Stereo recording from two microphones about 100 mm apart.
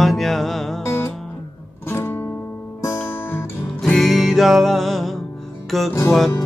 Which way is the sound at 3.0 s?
20° left (ahead or behind).